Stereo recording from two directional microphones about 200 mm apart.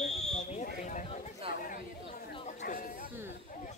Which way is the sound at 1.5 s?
45° left (ahead or behind).